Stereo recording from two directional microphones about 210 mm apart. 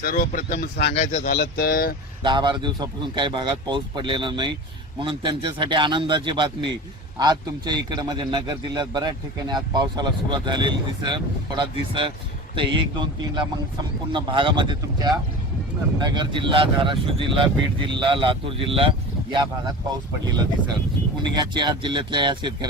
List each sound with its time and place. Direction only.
0.0 s speech: 40° left (ahead or behind)
1.3 s speech: 45° left (ahead or behind)
2.2 s speech: 20° right (ahead or behind)